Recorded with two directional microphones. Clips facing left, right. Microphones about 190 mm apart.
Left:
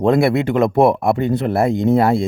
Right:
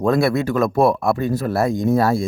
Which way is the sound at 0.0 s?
20° left (ahead or behind).